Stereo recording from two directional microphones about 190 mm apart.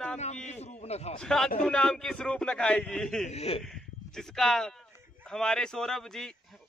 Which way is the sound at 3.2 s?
35° left (ahead or behind).